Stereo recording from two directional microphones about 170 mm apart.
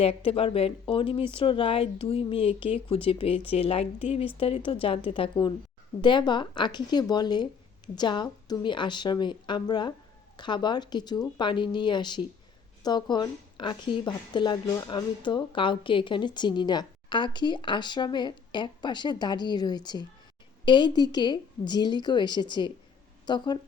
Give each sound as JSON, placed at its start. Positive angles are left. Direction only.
{"t": 0.0, "sound": "a woman's voice", "side_deg": 35}